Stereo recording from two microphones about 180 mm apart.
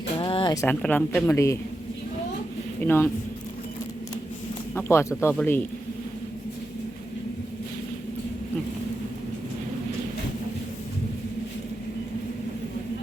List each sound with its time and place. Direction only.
0.2 s speech: 30° left (ahead or behind)
2.8 s speech: 15° left (ahead or behind)
4.7 s speech: 15° left (ahead or behind)